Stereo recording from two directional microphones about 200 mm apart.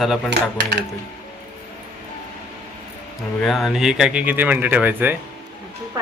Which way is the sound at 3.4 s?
Centre (ahead or behind).